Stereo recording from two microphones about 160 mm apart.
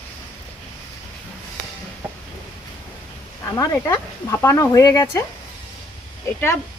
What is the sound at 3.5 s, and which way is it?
Speech, 15° left (ahead or behind).